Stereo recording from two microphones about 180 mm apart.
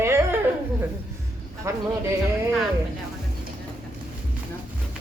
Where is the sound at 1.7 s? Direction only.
15° right (ahead or behind).